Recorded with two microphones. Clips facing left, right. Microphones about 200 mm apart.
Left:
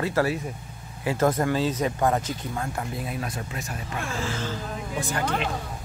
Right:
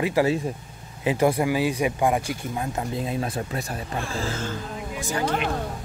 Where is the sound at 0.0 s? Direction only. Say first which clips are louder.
Right 3 dB; 15° right (ahead or behind); by 4.4 s 35° right (ahead or behind).